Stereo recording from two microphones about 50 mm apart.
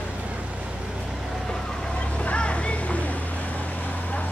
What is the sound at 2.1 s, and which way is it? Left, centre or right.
Vehicle, left.